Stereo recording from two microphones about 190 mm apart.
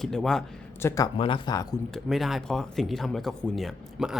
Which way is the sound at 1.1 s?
25° left (ahead or behind).